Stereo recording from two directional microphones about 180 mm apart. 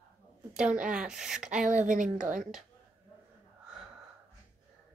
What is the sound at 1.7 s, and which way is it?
Speech, 45° right (ahead or behind).